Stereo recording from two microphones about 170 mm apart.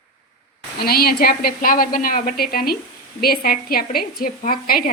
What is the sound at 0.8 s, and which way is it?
A woman's voice, 65° left (ahead or behind).